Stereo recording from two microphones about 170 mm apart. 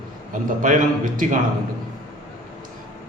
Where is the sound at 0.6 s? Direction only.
50° right (ahead or behind).